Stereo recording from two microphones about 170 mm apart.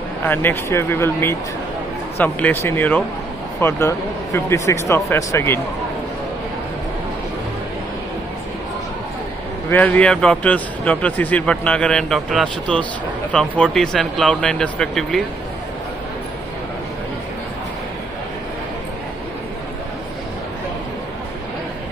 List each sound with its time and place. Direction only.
0.2 s a man's voice: 10° left (ahead or behind)
9.7 s a man's voice: 10° left (ahead or behind)